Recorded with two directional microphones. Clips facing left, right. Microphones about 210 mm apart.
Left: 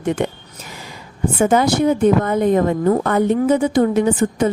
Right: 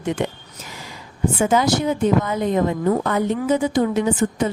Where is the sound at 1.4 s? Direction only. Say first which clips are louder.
Left 4 dB; 55° left (ahead or behind).